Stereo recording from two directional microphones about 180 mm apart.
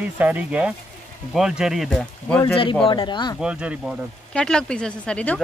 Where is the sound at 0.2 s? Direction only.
10° right (ahead or behind).